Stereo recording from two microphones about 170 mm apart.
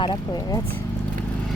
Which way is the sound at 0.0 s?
25° left (ahead or behind).